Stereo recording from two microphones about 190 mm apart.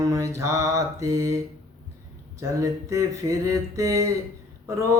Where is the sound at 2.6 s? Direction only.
15° right (ahead or behind).